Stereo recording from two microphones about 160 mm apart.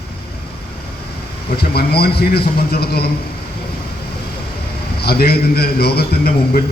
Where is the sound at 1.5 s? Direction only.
80° left.